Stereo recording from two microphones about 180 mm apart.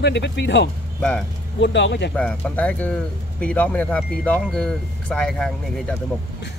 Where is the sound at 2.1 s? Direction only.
5° left (ahead or behind).